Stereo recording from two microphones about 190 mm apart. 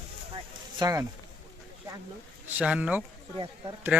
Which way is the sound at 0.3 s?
20° right (ahead or behind).